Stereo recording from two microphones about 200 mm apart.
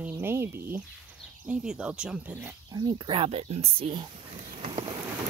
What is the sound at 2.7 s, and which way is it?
Speech, 20° right (ahead or behind).